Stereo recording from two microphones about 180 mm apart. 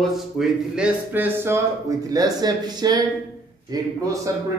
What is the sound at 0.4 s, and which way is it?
A man's voice, 5° right (ahead or behind).